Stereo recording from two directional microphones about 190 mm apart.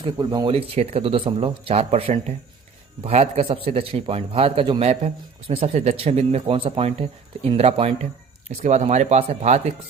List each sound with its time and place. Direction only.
0.0 s a man's voice: 20° right (ahead or behind)